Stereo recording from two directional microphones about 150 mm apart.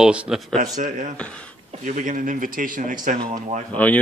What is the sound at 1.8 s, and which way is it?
A man's voice, 60° right (ahead or behind).